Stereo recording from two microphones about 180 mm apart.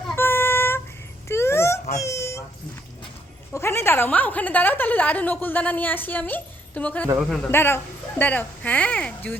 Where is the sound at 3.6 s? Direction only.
15° left (ahead or behind).